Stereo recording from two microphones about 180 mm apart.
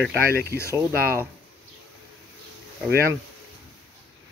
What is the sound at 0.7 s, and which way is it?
Speech, 15° right (ahead or behind).